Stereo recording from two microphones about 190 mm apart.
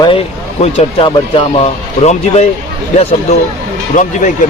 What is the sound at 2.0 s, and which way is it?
Speech, 35° left (ahead or behind).